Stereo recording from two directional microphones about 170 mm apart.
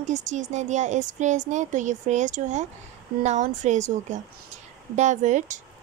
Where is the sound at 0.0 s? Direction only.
45° right (ahead or behind).